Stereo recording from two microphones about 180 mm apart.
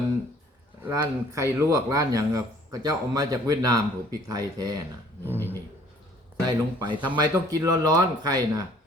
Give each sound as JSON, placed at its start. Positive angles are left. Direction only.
{"t": 0.8, "sound": "speech", "side_deg": -15}
{"t": 5.3, "sound": "dog", "side_deg": -10}
{"t": 6.4, "sound": "speech", "side_deg": -25}